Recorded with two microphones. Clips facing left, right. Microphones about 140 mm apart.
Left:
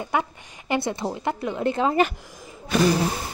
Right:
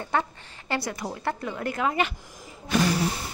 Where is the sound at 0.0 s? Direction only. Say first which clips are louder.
Left 2 dB; 15° left (ahead or behind).